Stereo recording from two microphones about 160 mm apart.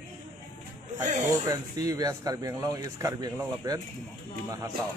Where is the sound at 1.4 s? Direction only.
20° right (ahead or behind).